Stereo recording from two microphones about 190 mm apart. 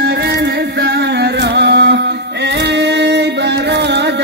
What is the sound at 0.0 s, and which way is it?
Music, 60° right (ahead or behind).